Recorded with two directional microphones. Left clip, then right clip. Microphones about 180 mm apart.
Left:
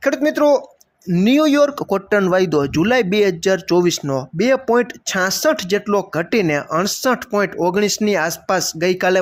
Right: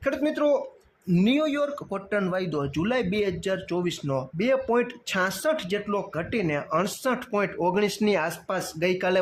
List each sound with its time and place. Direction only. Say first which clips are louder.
0.0 s speech: left 9 dB; 35° left (ahead or behind)